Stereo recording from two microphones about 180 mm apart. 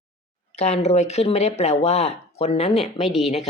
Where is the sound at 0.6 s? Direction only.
40° left (ahead or behind).